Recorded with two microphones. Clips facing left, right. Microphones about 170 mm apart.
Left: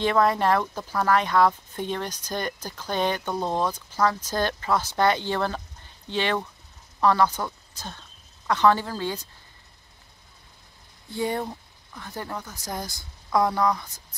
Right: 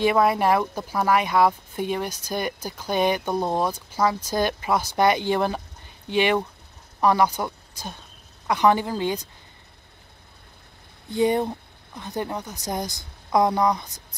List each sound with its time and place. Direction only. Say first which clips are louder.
0.0 s speech: right 2 dB; 10° right (ahead or behind)
11.1 s speech: right 6 dB; 20° right (ahead or behind)